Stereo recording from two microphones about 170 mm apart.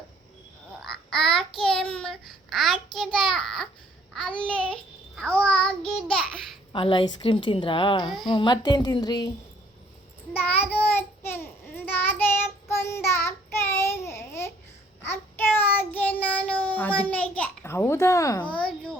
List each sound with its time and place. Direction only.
0.8 s babbling: centre (ahead or behind)
1.3 s a woman's voice: 30° left (ahead or behind)
1.7 s child singing: 5° left (ahead or behind)
6.7 s a woman's voice: 30° left (ahead or behind)
10.3 s child singing: 10° left (ahead or behind)
18.5 s a sound: 5° left (ahead or behind)